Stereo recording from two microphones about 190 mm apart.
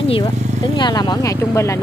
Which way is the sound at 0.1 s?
25° left (ahead or behind).